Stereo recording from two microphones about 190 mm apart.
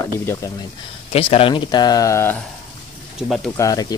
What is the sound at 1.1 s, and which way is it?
Speech, 30° left (ahead or behind).